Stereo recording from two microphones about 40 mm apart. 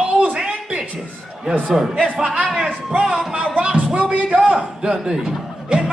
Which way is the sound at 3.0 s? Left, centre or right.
Centre.